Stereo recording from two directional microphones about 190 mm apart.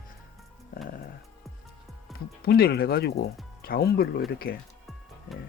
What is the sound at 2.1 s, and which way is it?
Speech, 55° left (ahead or behind).